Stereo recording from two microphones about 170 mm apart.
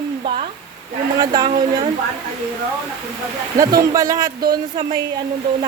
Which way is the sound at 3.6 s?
20° right (ahead or behind).